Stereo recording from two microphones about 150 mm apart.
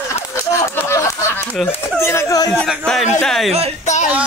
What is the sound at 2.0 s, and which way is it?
Speech, 20° left (ahead or behind).